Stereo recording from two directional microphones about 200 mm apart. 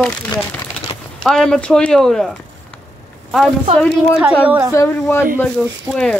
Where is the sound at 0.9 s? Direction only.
20° left (ahead or behind).